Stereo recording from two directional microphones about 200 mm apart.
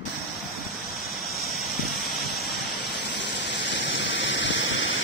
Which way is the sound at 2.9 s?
60° left (ahead or behind).